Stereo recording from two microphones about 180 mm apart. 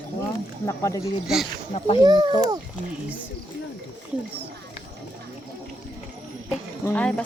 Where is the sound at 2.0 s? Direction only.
25° right (ahead or behind).